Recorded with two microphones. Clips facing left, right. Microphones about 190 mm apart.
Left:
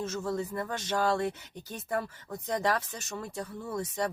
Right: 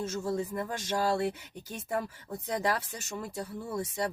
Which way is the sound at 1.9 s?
40° left (ahead or behind).